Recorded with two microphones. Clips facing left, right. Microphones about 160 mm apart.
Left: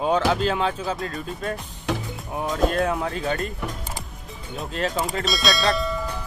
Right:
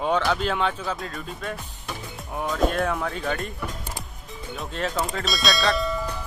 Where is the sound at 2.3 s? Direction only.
20° left (ahead or behind).